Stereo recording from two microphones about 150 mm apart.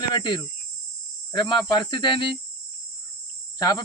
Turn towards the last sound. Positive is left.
turn(degrees=25)  # may be behind; listen again after turning